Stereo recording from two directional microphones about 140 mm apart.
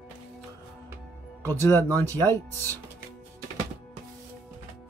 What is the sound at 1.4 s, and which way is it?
Speech, 15° left (ahead or behind).